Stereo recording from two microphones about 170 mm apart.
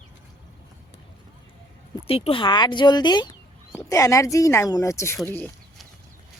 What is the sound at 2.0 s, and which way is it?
Speech, 35° left (ahead or behind).